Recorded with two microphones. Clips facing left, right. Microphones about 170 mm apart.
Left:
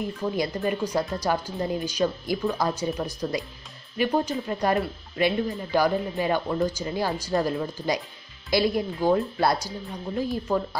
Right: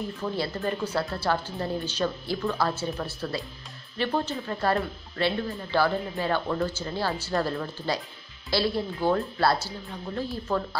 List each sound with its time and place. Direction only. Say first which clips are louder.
0.0 s speech: left 3 dB; 15° left (ahead or behind)